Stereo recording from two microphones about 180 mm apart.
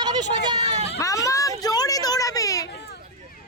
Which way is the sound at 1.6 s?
20° left (ahead or behind).